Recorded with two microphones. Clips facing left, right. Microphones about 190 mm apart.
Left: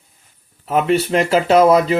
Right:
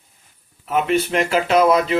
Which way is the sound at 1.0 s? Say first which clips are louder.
Left 4 dB; 35° left (ahead or behind).